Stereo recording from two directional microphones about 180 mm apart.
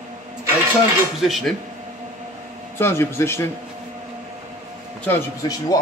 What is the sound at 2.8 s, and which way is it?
Speech, 15° left (ahead or behind).